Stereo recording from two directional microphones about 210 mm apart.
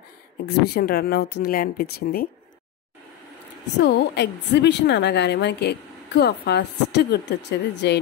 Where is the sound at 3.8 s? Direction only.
55° left (ahead or behind).